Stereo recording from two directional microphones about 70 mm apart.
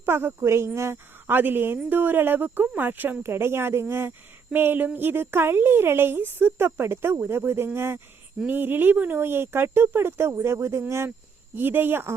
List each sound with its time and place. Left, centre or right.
0.0 s speech: right
4.5 s a sound: right
4.9 s speech: right